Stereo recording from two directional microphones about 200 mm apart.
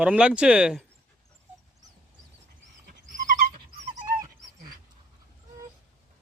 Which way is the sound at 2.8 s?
40° right (ahead or behind).